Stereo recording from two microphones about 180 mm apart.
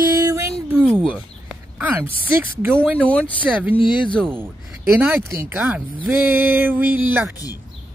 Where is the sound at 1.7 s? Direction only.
10° right (ahead or behind).